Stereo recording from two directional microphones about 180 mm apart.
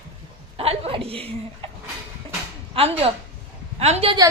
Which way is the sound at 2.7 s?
35° right (ahead or behind).